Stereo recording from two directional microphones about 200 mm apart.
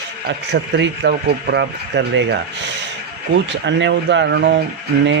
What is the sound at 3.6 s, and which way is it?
Speech, 60° right (ahead or behind).